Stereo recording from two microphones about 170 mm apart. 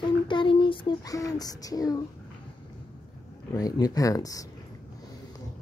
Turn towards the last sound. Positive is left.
turn(degrees=20)  # may be behind; listen again after turning